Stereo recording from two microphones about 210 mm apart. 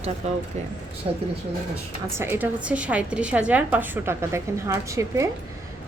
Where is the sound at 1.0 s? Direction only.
30° right (ahead or behind).